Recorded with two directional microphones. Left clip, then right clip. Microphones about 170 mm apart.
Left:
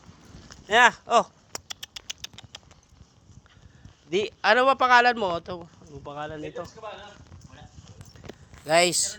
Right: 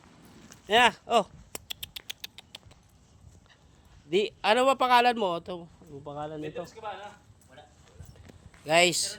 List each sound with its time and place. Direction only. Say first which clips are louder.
0.7 s a sound: left 4 dB; 30° right (ahead or behind)
2.0 s patter: left 3 dB; 30° right (ahead or behind)
4.1 s speech: left 3 dB; 15° right (ahead or behind)
8.6 s a man's voice: left 2 dB; centre (ahead or behind)